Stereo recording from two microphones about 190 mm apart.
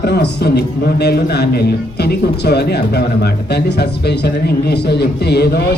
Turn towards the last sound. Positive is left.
turn(degrees=55)  # may be behind; listen again after turning